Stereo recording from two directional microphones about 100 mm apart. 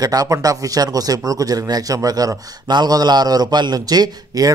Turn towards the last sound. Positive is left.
turn(degrees=-40)  # may be behind; listen again after turning